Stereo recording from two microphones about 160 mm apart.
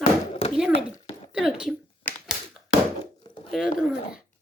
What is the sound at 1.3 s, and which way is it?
Speech, 5° right (ahead or behind).